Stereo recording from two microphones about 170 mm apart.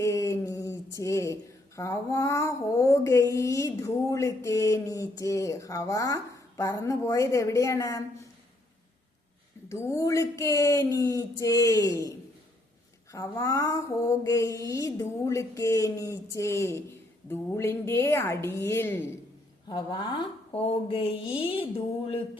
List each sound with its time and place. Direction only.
0.0 s speech: 15° left (ahead or behind)
9.6 s mantra: 15° left (ahead or behind)
17.2 s speech: 15° left (ahead or behind)
19.6 s mantra: 25° left (ahead or behind)